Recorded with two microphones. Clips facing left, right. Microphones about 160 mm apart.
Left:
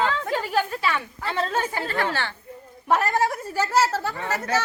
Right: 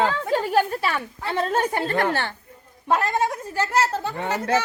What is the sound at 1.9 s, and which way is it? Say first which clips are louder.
Speech: right 3 dB; 50° right (ahead or behind).